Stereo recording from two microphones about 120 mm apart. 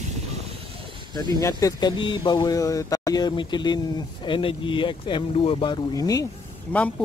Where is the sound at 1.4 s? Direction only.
30° left (ahead or behind); by 5.8 s 50° left (ahead or behind).